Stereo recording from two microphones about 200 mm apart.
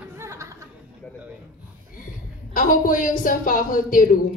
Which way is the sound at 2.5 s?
45° left (ahead or behind).